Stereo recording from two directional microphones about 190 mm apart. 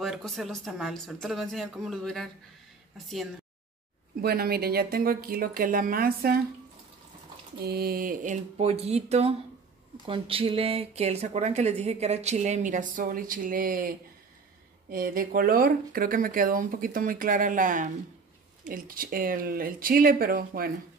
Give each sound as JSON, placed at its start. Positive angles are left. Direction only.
{"t": 0.0, "sound": "speech", "side_deg": 0}
{"t": 4.2, "sound": "speech", "side_deg": -55}
{"t": 7.6, "sound": "speech", "side_deg": -55}